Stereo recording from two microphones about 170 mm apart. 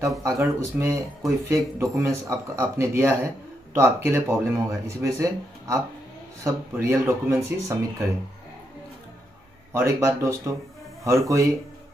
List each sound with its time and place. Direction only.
0.0 s speech: 20° right (ahead or behind)
9.7 s speech: 15° right (ahead or behind)